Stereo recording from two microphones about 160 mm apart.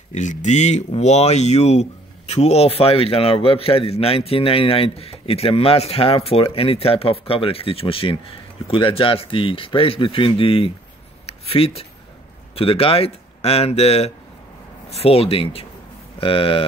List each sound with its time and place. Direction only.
0.1 s speech: 50° left (ahead or behind)
11.2 s a sound: 40° left (ahead or behind)
12.5 s speech: 35° left (ahead or behind)